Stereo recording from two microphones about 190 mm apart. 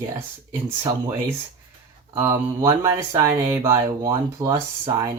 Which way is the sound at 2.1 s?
15° right (ahead or behind).